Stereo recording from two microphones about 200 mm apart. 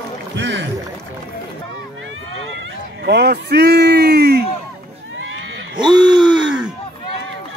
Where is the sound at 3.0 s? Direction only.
55° right (ahead or behind).